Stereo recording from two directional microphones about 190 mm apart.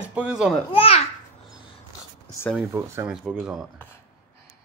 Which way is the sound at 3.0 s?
5° right (ahead or behind).